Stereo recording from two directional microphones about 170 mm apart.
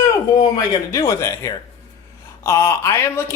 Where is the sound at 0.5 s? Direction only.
20° left (ahead or behind).